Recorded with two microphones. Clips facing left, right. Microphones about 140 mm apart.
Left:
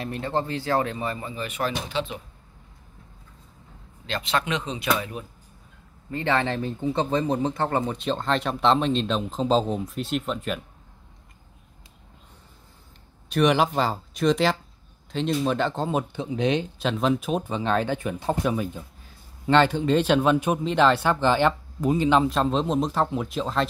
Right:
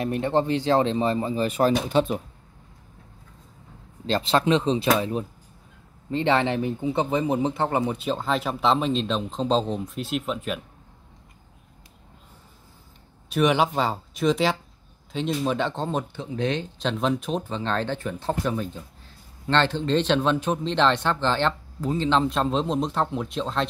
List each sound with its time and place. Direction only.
0.0 s speech: 20° right (ahead or behind); by 2.2 s 45° right (ahead or behind)
4.0 s speech: 30° right (ahead or behind)
6.0 s speech: 20° right (ahead or behind); by 10.6 s centre (ahead or behind)
13.3 s speech: centre (ahead or behind); by 16.8 s 15° left (ahead or behind)
16.8 s speech: centre (ahead or behind)